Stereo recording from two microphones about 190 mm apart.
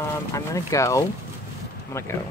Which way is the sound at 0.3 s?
15° left (ahead or behind).